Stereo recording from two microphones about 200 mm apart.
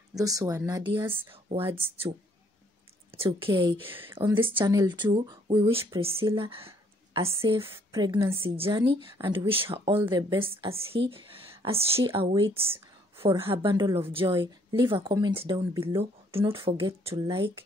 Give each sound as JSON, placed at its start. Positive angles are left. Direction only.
{"t": 0.1, "sound": "speech", "side_deg": -15}
{"t": 3.2, "sound": "speech", "side_deg": -25}